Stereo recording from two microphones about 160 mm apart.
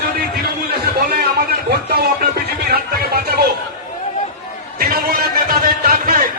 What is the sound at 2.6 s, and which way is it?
Music, 80° right.